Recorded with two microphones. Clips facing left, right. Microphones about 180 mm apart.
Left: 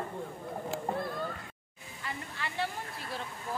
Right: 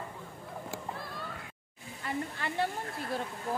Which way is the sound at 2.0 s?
50° right (ahead or behind).